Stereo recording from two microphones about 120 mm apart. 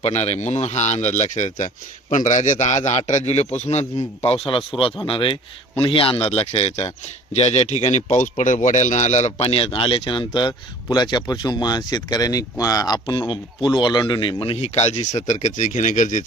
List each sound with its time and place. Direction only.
0.0 s speech: 60° left (ahead or behind)
3.1 s a man's voice: 65° left (ahead or behind)
9.6 s speech: 45° left (ahead or behind); by 15.0 s 65° left (ahead or behind)
15.3 s speech: 85° left